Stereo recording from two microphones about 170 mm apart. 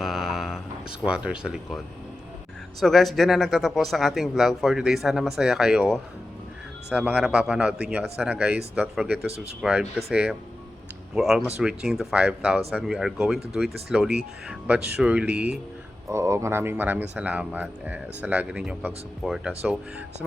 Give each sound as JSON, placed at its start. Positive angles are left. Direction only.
{"t": 0.0, "sound": "a sound", "side_deg": 0}
{"t": 2.8, "sound": "a man's voice", "side_deg": 0}
{"t": 9.1, "sound": "speech", "side_deg": -75}
{"t": 9.6, "sound": "a man's voice", "side_deg": -5}